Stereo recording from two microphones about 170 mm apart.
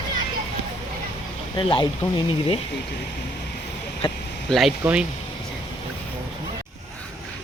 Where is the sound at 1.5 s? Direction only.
30° left (ahead or behind).